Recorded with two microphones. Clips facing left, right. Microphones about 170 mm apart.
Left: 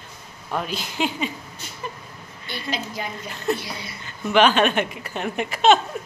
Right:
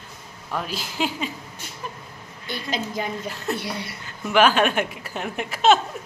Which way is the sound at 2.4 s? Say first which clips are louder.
Right 1 dB; 45° right (ahead or behind).